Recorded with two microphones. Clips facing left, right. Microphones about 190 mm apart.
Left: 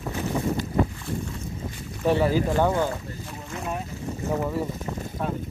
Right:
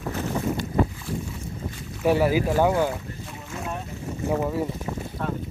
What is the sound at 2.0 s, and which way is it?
Speech, 10° right (ahead or behind).